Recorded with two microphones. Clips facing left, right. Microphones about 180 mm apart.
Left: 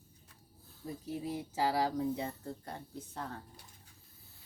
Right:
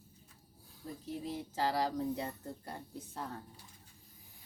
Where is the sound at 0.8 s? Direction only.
10° left (ahead or behind).